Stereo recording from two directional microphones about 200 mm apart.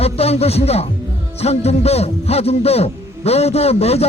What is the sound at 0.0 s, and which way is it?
A man's voice, 30° left (ahead or behind).